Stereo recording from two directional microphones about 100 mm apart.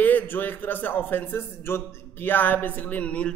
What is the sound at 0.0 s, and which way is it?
A man's voice, 20° left (ahead or behind).